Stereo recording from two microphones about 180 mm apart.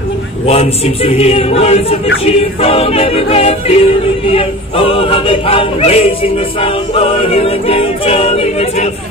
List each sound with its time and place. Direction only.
0.5 s a capella: 35° left (ahead or behind)